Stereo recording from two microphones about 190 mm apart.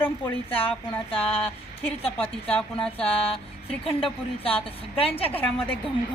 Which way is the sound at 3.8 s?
30° left (ahead or behind).